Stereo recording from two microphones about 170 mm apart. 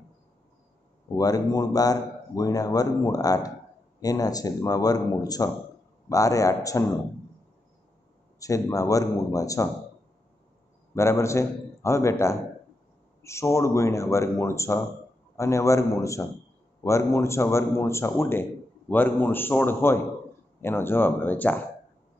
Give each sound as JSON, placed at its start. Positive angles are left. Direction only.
{"t": 1.1, "sound": "a man's voice", "side_deg": 20}
{"t": 8.4, "sound": "a man's voice", "side_deg": 20}
{"t": 11.0, "sound": "a man's voice", "side_deg": 15}